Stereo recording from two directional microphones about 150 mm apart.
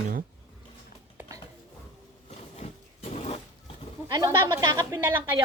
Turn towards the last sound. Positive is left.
turn(degrees=-30)  # may be behind; listen again after turning